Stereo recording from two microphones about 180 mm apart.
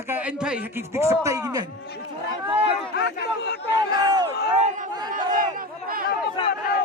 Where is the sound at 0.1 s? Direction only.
5° right (ahead or behind).